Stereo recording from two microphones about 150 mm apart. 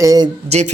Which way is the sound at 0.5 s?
45° right (ahead or behind).